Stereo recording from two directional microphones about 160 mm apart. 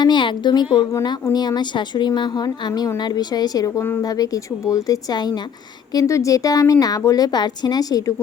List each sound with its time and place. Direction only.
0.0 s a woman's voice: 30° left (ahead or behind)